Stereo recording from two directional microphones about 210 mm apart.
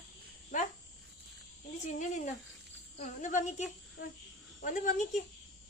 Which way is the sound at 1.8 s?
35° left (ahead or behind).